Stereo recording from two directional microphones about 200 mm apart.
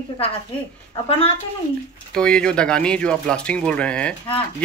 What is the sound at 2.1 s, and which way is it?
Speech, 5° left (ahead or behind).